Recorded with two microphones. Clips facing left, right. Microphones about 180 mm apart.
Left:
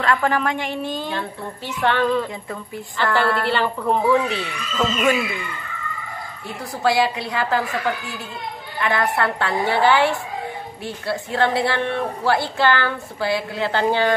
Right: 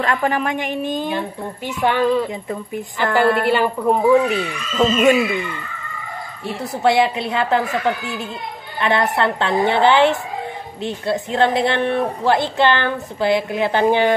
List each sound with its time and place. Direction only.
0.0 s a woman's voice: 20° right (ahead or behind)
6.4 s a woman's voice: 25° right (ahead or behind)